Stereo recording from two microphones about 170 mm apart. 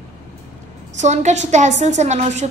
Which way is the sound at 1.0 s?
45° right (ahead or behind).